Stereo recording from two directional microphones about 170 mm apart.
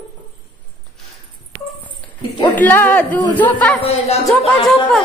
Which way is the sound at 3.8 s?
35° left (ahead or behind).